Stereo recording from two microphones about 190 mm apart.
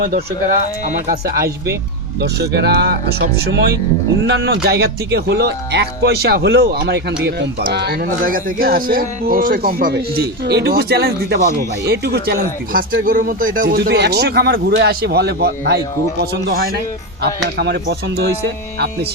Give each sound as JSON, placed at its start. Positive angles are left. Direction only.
{"t": 0.9, "sound": "speech", "side_deg": -50}
{"t": 17.6, "sound": "speech", "side_deg": -60}